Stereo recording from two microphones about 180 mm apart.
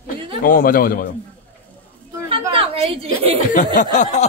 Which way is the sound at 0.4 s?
55° left (ahead or behind).